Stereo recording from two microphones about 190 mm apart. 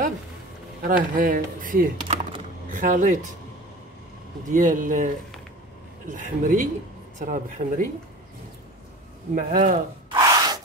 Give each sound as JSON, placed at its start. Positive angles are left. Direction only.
{"t": 0.8, "sound": "speech", "side_deg": -45}
{"t": 2.1, "sound": "computer keyboard", "side_deg": -30}
{"t": 2.7, "sound": "speech", "side_deg": -45}
{"t": 4.5, "sound": "speech", "side_deg": -45}
{"t": 9.3, "sound": "speech", "side_deg": -45}
{"t": 10.1, "sound": "a sound", "side_deg": -20}